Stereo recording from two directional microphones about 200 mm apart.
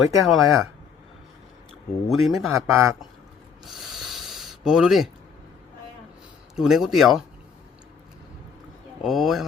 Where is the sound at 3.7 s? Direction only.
Centre (ahead or behind).